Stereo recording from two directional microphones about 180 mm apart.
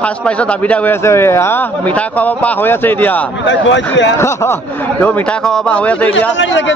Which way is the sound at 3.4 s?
90° left.